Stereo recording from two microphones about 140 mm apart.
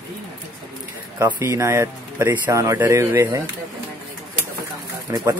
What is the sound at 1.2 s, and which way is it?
Speech, 20° right (ahead or behind).